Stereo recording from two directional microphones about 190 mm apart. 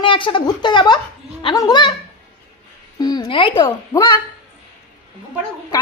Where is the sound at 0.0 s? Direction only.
25° left (ahead or behind).